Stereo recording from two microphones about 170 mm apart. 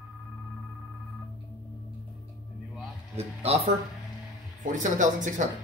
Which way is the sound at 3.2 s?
40° right (ahead or behind).